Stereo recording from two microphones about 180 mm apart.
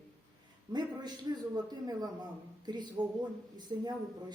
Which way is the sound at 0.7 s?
25° right (ahead or behind).